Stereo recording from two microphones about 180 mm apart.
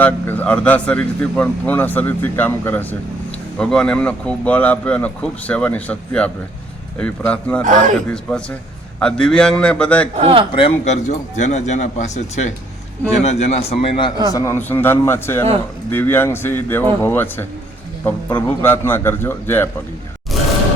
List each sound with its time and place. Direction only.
0.0 s speech: 10° left (ahead or behind)
7.6 s a man's voice: 45° right (ahead or behind)
7.9 s a man's voice: 5° left (ahead or behind)
10.2 s speech: 30° right (ahead or behind)
10.5 s speech: 35° left (ahead or behind)
14.3 s speech: 15° left (ahead or behind)